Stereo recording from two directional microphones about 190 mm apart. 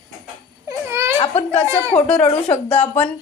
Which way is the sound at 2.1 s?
5° left (ahead or behind).